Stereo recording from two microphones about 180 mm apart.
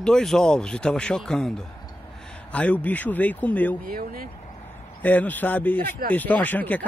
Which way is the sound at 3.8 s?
55° right (ahead or behind).